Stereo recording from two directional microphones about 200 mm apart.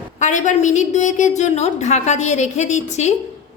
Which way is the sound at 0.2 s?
40° left (ahead or behind).